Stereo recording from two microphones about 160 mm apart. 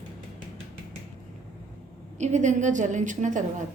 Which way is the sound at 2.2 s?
50° right (ahead or behind).